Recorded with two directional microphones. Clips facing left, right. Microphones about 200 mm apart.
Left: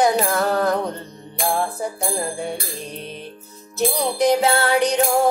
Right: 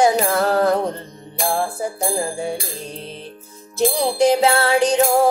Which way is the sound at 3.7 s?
30° right (ahead or behind).